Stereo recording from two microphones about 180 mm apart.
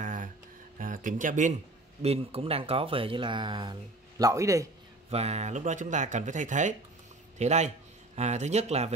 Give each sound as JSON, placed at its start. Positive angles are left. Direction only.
{"t": 0.0, "sound": "a sound", "side_deg": -45}
{"t": 2.0, "sound": "a man's voice", "side_deg": -35}
{"t": 5.1, "sound": "speech", "side_deg": -35}